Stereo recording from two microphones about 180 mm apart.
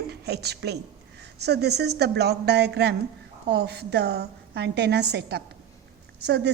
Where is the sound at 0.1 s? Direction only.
65° right (ahead or behind).